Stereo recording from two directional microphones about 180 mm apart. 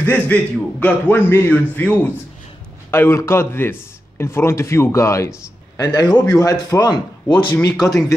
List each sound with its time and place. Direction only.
0.0 s a man's voice: 10° left (ahead or behind); by 7.5 s 25° left (ahead or behind)